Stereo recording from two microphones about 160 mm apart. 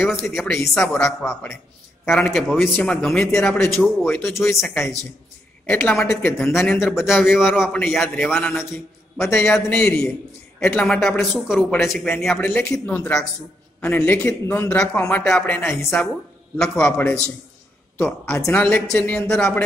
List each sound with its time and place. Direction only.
0.0 s a man's voice: centre (ahead or behind)
3.6 s a man's voice: 15° left (ahead or behind)
4.0 s a man's voice: 5° left (ahead or behind)
6.3 s a man's voice: centre (ahead or behind)
16.8 s a man's voice: 10° left (ahead or behind)